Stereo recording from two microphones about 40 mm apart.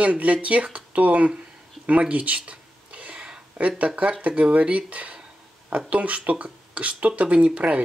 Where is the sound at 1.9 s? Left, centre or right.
Right.